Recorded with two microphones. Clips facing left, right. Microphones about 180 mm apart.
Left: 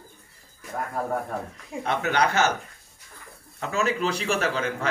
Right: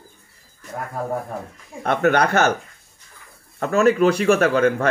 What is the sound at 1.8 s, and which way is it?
Speech, 55° right (ahead or behind).